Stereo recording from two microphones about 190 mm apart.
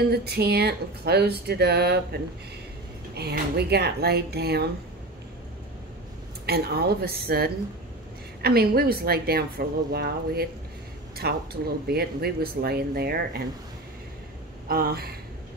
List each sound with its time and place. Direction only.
0.0 s speech: 55° right (ahead or behind)
6.4 s speech: 55° right (ahead or behind)
14.7 s speech: 55° right (ahead or behind)